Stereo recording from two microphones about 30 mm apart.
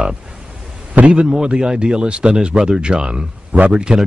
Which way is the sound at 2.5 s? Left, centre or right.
Centre.